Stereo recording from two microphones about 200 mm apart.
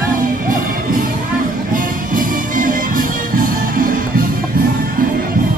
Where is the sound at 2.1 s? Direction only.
40° right (ahead or behind).